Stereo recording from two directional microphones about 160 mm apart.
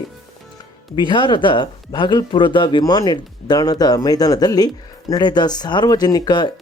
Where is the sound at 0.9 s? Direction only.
30° left (ahead or behind).